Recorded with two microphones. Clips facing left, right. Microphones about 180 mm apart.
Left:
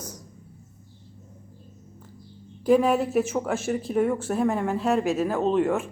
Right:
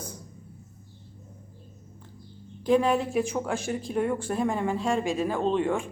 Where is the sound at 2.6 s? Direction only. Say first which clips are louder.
Left 3 dB; 5° left (ahead or behind).